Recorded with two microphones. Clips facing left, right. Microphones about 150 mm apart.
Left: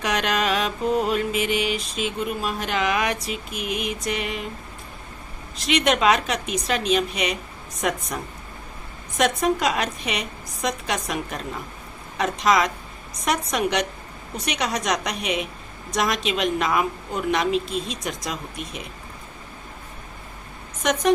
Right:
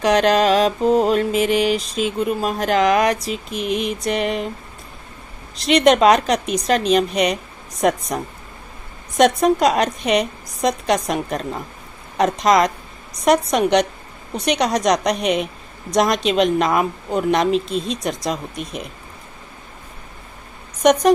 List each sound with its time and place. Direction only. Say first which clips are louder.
0.0 s mantra: right 9 dB; 35° right (ahead or behind)
5.5 s mantra: right 7 dB; 35° right (ahead or behind)
15.2 s a woman's voice: right 7 dB; 5° left (ahead or behind)
15.9 s mantra: right 6 dB; 35° right (ahead or behind)